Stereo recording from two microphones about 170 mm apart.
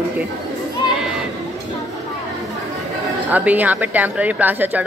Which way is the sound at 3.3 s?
10° right (ahead or behind).